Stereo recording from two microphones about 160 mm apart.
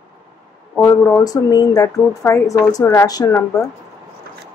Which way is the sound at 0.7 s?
10° left (ahead or behind).